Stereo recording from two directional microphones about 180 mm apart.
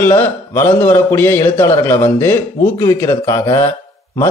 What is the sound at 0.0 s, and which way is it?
A man's voice, 15° left (ahead or behind).